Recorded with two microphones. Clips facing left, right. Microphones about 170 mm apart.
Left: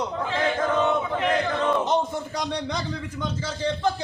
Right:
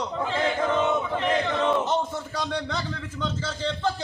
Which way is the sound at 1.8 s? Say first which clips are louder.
Left 2 dB; 15° left (ahead or behind).